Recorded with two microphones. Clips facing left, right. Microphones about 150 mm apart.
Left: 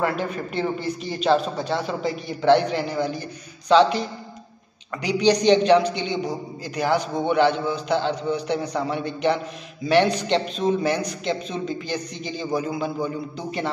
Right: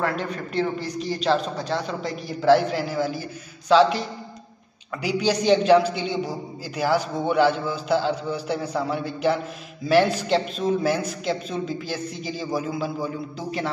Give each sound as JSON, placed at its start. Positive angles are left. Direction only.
{"t": 0.0, "sound": "a man's voice", "side_deg": 5}